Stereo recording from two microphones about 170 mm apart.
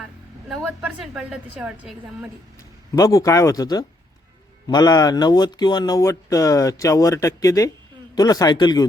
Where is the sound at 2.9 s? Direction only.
20° left (ahead or behind).